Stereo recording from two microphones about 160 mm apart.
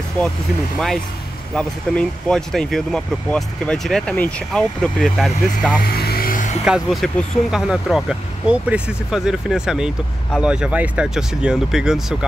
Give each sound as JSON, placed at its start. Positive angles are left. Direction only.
{"t": 0.7, "sound": "speech", "side_deg": 0}
{"t": 5.8, "sound": "music", "side_deg": 75}
{"t": 6.6, "sound": "speech", "side_deg": 0}